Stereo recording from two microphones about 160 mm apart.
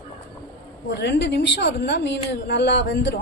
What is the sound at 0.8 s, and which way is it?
A woman's voice, 90° left.